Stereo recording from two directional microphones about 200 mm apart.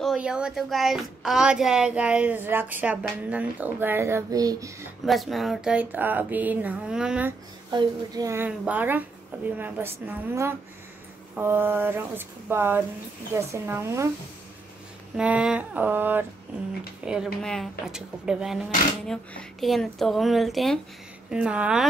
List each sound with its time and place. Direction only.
0.0 s speech: 5° right (ahead or behind)
5.0 s speech: centre (ahead or behind)
7.7 s speech: 20° right (ahead or behind)
15.1 s speech: 5° right (ahead or behind)